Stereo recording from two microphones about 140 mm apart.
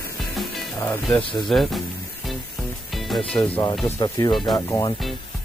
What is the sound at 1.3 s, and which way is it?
Speech, centre (ahead or behind).